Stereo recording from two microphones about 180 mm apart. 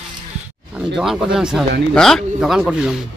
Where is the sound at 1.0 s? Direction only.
Centre (ahead or behind).